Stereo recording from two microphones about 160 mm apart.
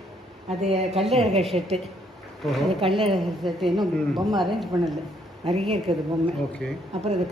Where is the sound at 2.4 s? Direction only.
Centre (ahead or behind).